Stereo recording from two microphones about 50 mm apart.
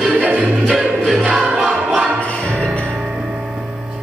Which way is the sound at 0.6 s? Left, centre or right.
Centre.